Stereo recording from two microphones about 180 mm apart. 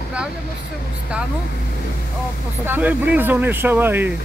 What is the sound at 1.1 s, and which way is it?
Speech, 5° right (ahead or behind).